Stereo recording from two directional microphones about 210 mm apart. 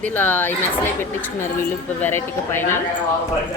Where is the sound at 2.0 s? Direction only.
10° left (ahead or behind).